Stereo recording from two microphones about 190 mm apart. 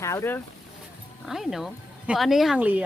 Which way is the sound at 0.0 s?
15° left (ahead or behind).